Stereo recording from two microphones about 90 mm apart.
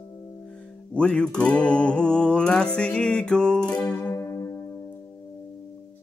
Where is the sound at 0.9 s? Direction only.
10° left (ahead or behind).